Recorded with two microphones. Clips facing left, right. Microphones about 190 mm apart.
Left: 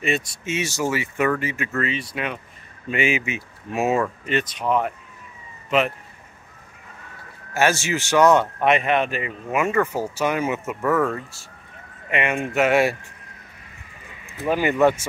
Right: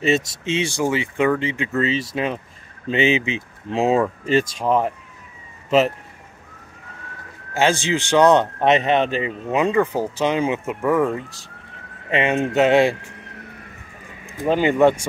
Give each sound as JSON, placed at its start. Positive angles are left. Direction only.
{"t": 0.8, "sound": "speech", "side_deg": -20}
{"t": 1.9, "sound": "speech", "side_deg": -30}
{"t": 7.5, "sound": "speech", "side_deg": -15}
{"t": 12.1, "sound": "speech", "side_deg": -30}
{"t": 14.2, "sound": "speech", "side_deg": -15}